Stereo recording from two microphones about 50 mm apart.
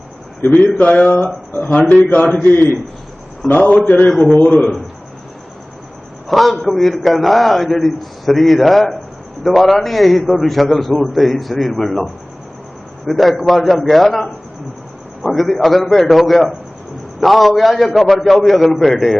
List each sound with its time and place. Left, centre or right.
0.6 s speech: left
2.4 s a man's voice: left
3.5 s a man's voice: left
6.2 s a man's voice: centre